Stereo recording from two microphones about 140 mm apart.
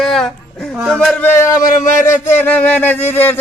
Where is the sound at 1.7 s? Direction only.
65° left (ahead or behind).